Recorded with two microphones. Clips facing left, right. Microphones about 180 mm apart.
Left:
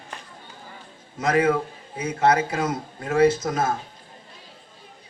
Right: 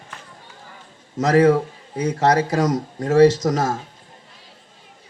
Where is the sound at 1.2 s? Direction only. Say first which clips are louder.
Right 6 dB; 40° right (ahead or behind).